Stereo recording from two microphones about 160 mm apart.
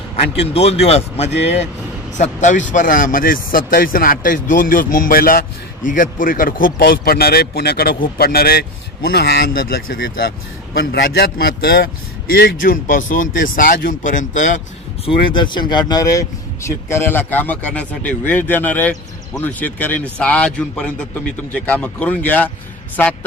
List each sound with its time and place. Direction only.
0.1 s speech: 40° left (ahead or behind)
15.3 s speech: 30° left (ahead or behind); by 22.5 s 10° left (ahead or behind)